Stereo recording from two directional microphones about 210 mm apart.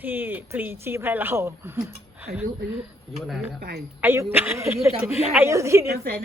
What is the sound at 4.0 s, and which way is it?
Speech, 10° right (ahead or behind).